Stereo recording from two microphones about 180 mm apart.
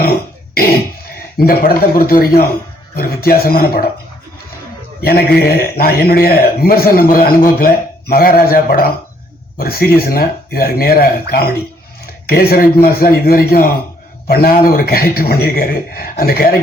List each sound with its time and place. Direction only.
0.0 s cough: 55° left (ahead or behind)
1.0 s a man's voice: 55° left (ahead or behind)
5.0 s a man's voice: 60° left (ahead or behind)